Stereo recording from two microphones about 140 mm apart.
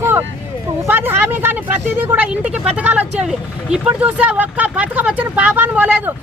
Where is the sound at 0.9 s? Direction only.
15° right (ahead or behind).